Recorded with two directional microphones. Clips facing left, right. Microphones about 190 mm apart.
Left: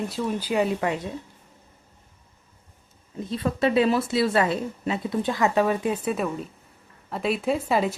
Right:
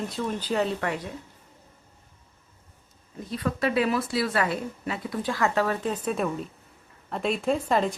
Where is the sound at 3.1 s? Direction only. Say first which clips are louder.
Left 3 dB; 25° left (ahead or behind).